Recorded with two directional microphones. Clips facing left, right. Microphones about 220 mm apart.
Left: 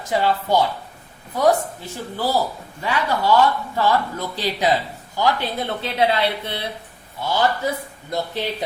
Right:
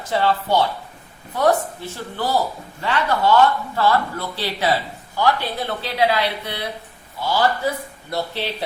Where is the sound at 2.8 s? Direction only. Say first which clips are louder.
Right 1 dB; 10° left (ahead or behind).